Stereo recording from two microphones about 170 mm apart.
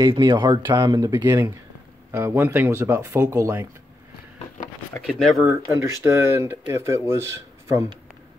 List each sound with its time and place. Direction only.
0.1 s speech: 30° right (ahead or behind)
0.6 s speech: 15° right (ahead or behind)
5.0 s speech: centre (ahead or behind)
5.4 s speech: 15° right (ahead or behind)